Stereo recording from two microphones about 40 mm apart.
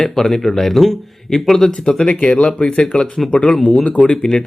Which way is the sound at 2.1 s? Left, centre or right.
Left.